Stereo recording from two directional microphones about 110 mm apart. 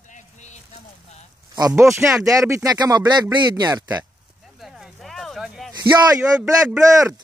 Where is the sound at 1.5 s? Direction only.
35° right (ahead or behind).